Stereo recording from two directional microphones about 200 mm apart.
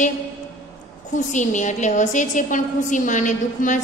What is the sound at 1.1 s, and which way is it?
A woman's voice, 40° left (ahead or behind).